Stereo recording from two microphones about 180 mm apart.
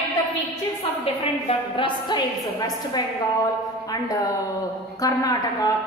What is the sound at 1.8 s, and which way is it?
A woman's voice, 25° left (ahead or behind).